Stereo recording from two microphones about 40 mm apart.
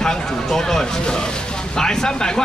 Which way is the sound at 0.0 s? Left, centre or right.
Centre.